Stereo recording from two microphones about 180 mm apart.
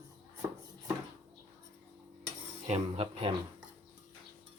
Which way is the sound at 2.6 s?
35° right (ahead or behind).